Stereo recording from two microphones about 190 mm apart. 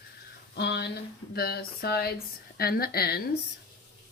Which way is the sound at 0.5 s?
60° left (ahead or behind).